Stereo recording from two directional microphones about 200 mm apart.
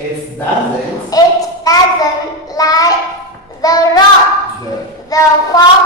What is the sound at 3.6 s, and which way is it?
Child singing, 20° left (ahead or behind).